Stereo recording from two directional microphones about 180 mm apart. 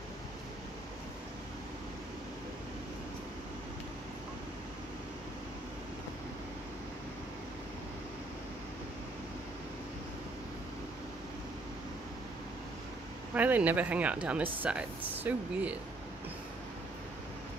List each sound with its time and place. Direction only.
13.3 s speech: 10° right (ahead or behind)